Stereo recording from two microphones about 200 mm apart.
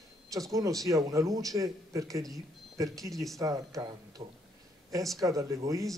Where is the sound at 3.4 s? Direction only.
15° right (ahead or behind).